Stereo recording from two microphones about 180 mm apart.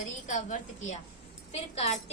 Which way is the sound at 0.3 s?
40° left (ahead or behind).